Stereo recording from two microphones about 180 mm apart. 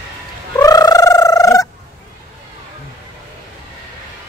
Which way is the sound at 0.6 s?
20° left (ahead or behind).